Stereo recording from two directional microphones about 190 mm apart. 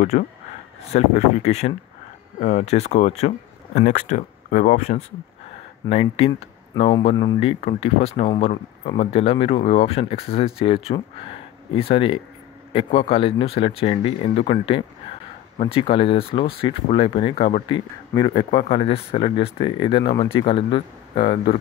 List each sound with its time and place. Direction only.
0.1 s speech: 40° left (ahead or behind); by 21.5 s 25° left (ahead or behind)